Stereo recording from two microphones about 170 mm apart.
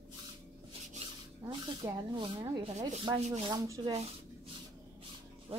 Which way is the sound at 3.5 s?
20° right (ahead or behind).